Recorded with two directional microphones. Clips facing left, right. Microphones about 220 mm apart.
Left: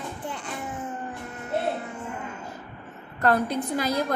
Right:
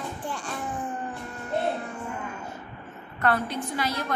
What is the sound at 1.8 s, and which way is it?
Music, 20° left (ahead or behind).